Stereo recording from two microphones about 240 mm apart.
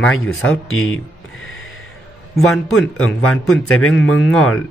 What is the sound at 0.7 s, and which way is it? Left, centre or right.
Speech, left.